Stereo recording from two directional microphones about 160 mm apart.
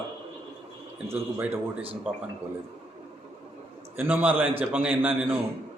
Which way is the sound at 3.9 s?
10° right (ahead or behind).